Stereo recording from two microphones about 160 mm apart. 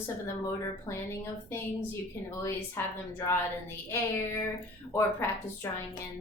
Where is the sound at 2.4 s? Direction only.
15° left (ahead or behind).